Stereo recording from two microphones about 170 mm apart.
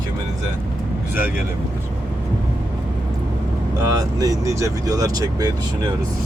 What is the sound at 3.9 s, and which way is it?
Speech, 20° right (ahead or behind).